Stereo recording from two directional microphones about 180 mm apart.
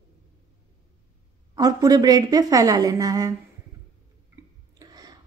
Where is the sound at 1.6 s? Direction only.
20° right (ahead or behind).